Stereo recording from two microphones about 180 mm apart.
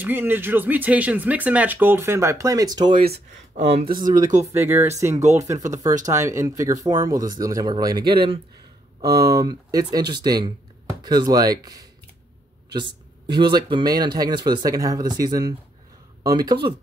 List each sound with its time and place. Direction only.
0.0 s speech: 10° right (ahead or behind)
4.0 s speech: 20° right (ahead or behind)
9.0 s speech: 60° right (ahead or behind)
9.3 s speech: 20° right (ahead or behind)